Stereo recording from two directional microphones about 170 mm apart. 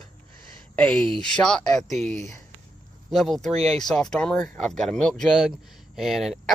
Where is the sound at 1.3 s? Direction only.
5° left (ahead or behind).